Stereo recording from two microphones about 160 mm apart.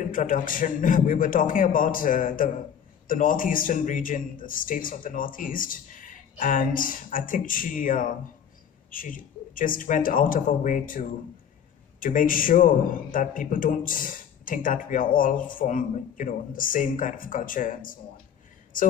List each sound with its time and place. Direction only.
0.0 s a man's voice: 55° left (ahead or behind)